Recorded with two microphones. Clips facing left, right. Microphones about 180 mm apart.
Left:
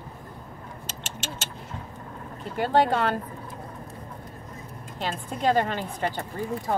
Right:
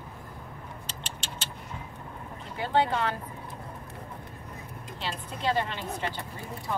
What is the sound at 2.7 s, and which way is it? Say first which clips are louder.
Speech: left 4 dB; 50° left (ahead or behind).